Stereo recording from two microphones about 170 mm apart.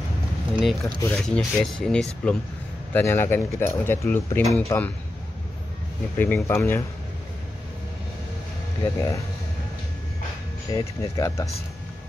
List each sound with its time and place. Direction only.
0.6 s speech: centre (ahead or behind)
4.4 s speech: centre (ahead or behind)
6.1 s speech: 10° left (ahead or behind)
8.8 s speech: 20° left (ahead or behind)
10.7 s speech: 20° left (ahead or behind)